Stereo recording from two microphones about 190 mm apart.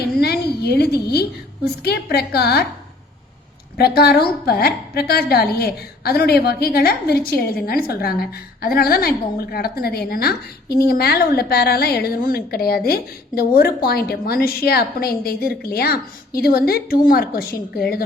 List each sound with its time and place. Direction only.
0.2 s a sound: 55° left (ahead or behind)
1.8 s a woman's voice: 55° left (ahead or behind)
3.8 s a woman's voice: 55° left (ahead or behind)